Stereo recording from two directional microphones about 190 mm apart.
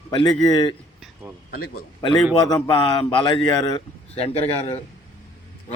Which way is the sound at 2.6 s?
25° left (ahead or behind).